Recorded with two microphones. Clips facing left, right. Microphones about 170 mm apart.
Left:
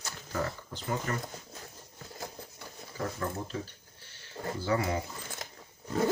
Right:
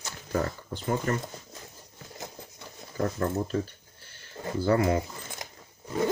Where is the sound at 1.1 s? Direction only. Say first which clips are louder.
Right 7 dB; 40° right (ahead or behind).